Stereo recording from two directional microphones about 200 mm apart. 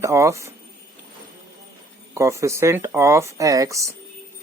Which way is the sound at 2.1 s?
15° right (ahead or behind).